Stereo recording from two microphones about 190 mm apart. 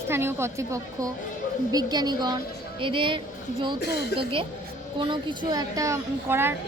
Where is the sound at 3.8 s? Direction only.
60° left (ahead or behind).